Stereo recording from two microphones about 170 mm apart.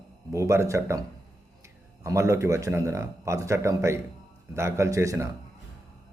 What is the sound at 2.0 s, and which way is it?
A man's voice, 15° right (ahead or behind).